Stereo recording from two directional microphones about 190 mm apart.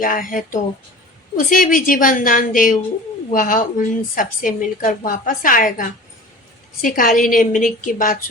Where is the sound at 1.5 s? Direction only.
45° left (ahead or behind).